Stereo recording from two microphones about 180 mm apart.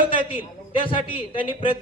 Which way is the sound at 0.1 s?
30° left (ahead or behind).